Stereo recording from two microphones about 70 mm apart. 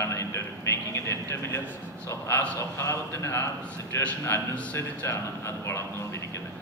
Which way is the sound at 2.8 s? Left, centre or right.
Left.